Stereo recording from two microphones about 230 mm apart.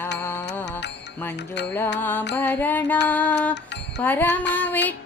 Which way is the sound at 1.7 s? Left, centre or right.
Centre.